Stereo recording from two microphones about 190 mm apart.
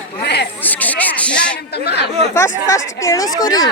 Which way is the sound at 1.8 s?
60° left (ahead or behind).